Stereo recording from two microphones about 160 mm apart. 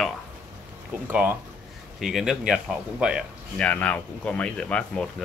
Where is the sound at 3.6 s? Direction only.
10° left (ahead or behind).